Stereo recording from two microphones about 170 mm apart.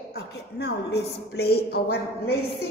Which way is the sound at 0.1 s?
75° left (ahead or behind).